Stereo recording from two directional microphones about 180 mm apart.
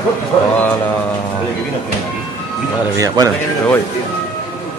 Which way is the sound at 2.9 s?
20° right (ahead or behind).